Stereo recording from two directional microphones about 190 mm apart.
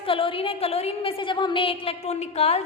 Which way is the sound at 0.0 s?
30° left (ahead or behind).